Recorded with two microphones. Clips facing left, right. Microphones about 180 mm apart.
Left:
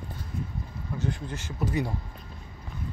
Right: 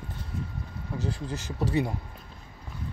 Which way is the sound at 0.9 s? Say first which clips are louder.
Even; 35° right (ahead or behind).